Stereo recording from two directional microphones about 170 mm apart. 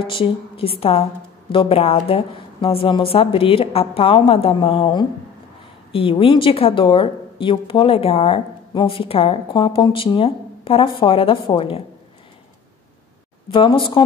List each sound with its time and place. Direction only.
0.0 s a woman's voice: 30° left (ahead or behind)
13.5 s speech: 30° left (ahead or behind)